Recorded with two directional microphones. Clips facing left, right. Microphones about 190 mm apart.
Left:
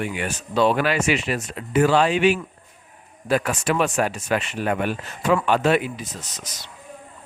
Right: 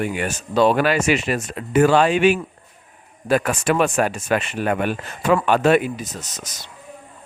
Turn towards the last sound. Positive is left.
turn(degrees=-45)  # may be behind; listen again after turning